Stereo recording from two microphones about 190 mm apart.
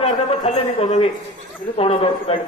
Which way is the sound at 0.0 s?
30° left (ahead or behind).